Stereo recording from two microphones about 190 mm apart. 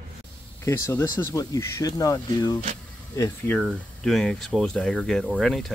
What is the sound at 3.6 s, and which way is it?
Speech, centre (ahead or behind).